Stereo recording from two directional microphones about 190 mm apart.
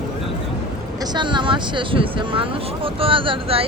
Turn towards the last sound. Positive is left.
turn(degrees=-30)  # may be behind; listen again after turning